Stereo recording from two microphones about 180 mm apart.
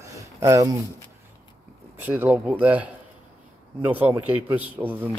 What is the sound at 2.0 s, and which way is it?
A man's voice, 10° right (ahead or behind).